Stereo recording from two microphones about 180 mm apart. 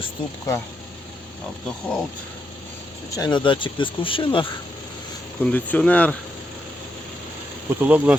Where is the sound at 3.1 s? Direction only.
20° left (ahead or behind).